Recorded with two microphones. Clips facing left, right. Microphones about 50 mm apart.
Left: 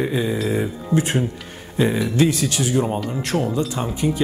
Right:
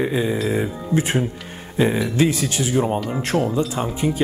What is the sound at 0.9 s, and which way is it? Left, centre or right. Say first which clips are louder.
Speech: left 1 dB; right.